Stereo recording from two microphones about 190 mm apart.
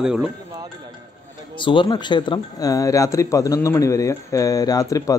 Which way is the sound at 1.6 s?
25° left (ahead or behind).